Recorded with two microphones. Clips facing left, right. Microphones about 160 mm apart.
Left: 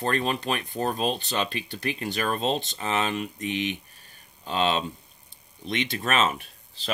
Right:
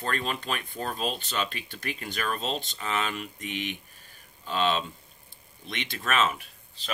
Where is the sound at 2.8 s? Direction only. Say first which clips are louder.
Left 4 dB; 20° left (ahead or behind).